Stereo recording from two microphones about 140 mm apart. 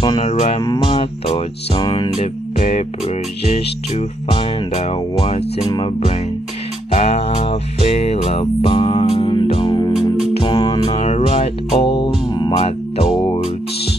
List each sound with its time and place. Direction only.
0.2 s music: 50° left (ahead or behind)
1.8 s music: 35° left (ahead or behind)
2.1 s music: 50° left (ahead or behind)
6.9 s music: 50° left (ahead or behind); by 10.8 s 30° left (ahead or behind)
10.9 s music: 45° left (ahead or behind)
12.6 s music: 50° left (ahead or behind)
13.1 s music: 35° left (ahead or behind)